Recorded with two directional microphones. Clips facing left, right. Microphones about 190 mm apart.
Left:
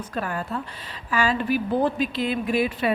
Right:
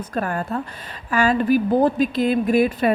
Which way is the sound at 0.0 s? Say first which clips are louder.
Right 4 dB; 45° right (ahead or behind).